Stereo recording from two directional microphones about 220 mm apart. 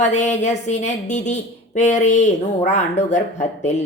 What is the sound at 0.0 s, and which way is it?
A woman's voice, 30° left (ahead or behind).